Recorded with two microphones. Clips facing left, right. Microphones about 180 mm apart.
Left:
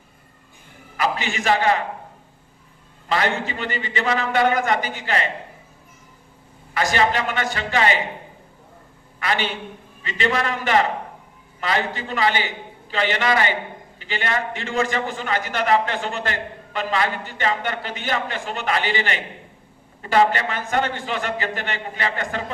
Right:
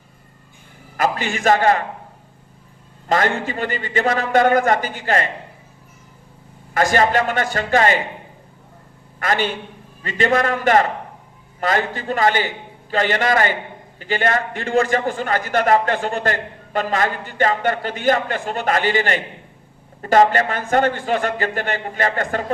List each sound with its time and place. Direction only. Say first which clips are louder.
0.9 s a man's voice: right 3 dB; 45° right (ahead or behind)
3.1 s a man's voice: right 3 dB; 45° right (ahead or behind)
6.7 s a man's voice: right 4 dB; 45° right (ahead or behind)
9.1 s a man's voice: right 3 dB; 45° right (ahead or behind)